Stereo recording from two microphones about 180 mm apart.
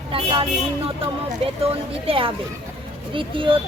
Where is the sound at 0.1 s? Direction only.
30° right (ahead or behind).